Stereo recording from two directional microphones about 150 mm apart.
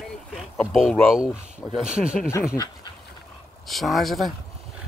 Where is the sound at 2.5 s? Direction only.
25° left (ahead or behind).